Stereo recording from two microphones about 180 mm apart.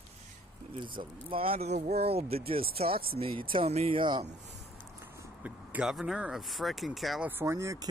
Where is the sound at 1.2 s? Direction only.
30° right (ahead or behind).